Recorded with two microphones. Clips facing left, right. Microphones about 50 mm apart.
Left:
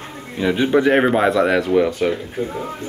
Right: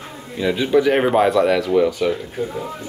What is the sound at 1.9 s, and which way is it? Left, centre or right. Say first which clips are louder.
Speech: even; left.